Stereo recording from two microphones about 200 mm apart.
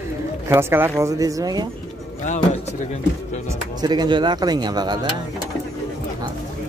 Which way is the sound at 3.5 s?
20° right (ahead or behind).